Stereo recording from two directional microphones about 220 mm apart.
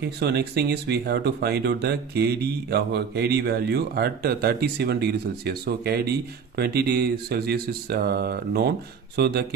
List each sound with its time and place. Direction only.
0.2 s speech: 50° right (ahead or behind)